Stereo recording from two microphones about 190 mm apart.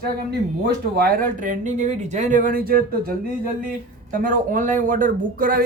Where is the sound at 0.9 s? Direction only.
50° right (ahead or behind).